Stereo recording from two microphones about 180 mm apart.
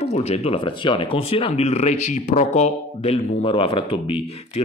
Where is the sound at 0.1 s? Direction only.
35° left (ahead or behind).